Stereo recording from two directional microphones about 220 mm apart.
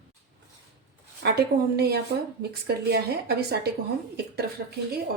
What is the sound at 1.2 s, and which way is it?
A woman's voice, 45° right (ahead or behind).